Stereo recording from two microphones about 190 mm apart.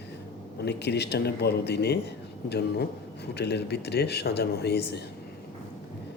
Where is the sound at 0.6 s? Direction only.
60° left (ahead or behind).